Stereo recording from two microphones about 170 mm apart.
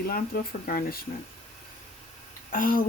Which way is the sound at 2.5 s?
55° left (ahead or behind).